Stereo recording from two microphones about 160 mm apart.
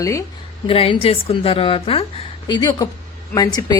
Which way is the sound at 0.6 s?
35° left (ahead or behind).